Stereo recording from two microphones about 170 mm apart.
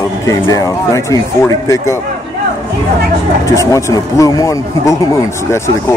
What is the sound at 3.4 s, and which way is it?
Speech, 20° left (ahead or behind).